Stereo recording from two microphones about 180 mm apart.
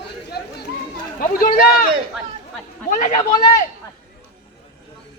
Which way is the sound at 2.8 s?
45° left (ahead or behind).